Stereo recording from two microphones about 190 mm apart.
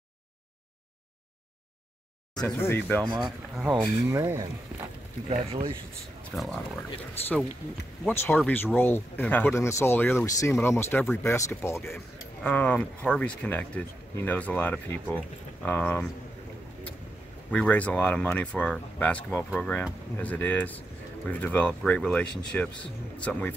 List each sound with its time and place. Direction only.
2.4 s speech: 10° left (ahead or behind)
3.1 s speech: 20° right (ahead or behind)
5.5 s speech: 30° right (ahead or behind)
6.3 s speech: centre (ahead or behind)
17.5 s speech: 5° left (ahead or behind)